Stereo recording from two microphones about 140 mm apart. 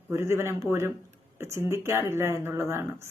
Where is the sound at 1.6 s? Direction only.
20° right (ahead or behind).